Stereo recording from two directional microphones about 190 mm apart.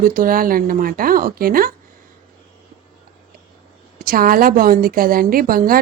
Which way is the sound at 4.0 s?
50° right (ahead or behind).